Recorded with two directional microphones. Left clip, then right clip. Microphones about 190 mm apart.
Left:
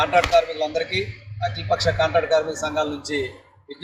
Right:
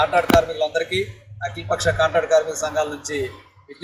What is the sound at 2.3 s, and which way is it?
Speech, 5° right (ahead or behind).